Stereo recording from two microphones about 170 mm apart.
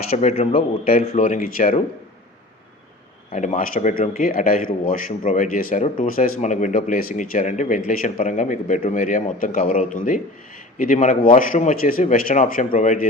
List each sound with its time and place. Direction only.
0.2 s a man's voice: 40° left (ahead or behind)
3.3 s a man's voice: 45° left (ahead or behind)